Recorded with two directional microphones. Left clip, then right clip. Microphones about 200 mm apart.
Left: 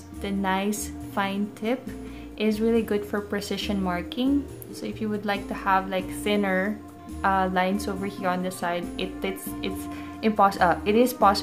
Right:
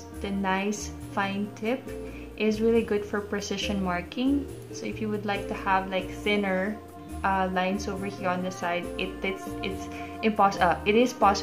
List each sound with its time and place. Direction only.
0.2 s a woman's voice: 15° left (ahead or behind)